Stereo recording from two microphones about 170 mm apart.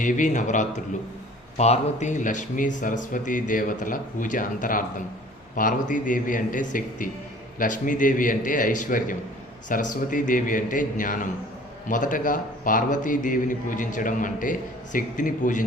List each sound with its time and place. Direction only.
0.0 s speech: 45° left (ahead or behind)